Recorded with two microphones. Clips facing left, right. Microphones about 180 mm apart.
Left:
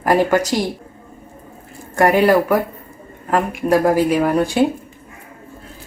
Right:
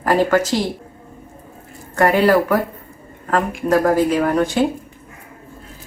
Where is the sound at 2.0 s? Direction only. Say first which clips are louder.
Left 1 dB; 10° left (ahead or behind).